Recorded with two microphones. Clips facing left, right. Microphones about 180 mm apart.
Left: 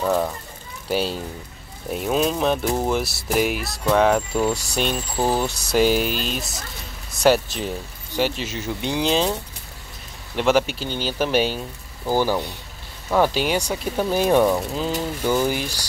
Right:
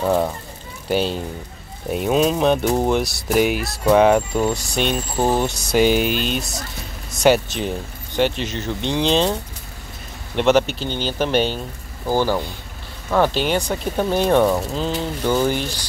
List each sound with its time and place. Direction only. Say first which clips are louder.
0.0 s speech: right 2 dB; 15° right (ahead or behind)
0.8 s speech: right 3 dB; centre (ahead or behind)
2.6 s speech: right 4 dB; 20° right (ahead or behind)
2.9 s speech: right 3 dB; 5° left (ahead or behind)
5.1 s speech: right 2 dB; 20° right (ahead or behind)
5.4 s speech: right 2 dB; centre (ahead or behind)
10.3 s speech: right 3 dB; 5° left (ahead or behind)
13.1 s speech: right 1 dB; 10° left (ahead or behind)